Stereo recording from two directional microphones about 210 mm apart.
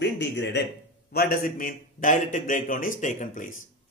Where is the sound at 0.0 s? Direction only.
55° left (ahead or behind).